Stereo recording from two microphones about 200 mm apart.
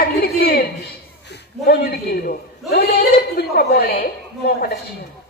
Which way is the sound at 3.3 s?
50° left (ahead or behind).